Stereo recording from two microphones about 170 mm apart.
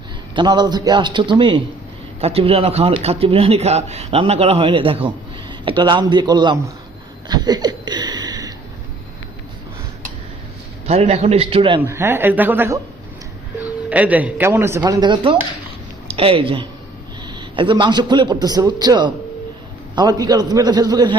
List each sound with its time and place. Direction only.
0.3 s a man's voice: 25° right (ahead or behind)
7.3 s a sound: 25° right (ahead or behind)
10.8 s speech: 35° right (ahead or behind)
11.8 s speech: 15° right (ahead or behind)
13.9 s a woman's voice: 10° right (ahead or behind)